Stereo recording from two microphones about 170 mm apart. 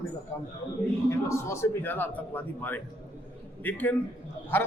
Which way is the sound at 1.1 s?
15° left (ahead or behind).